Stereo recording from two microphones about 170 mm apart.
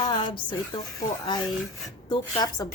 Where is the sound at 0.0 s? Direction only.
25° left (ahead or behind).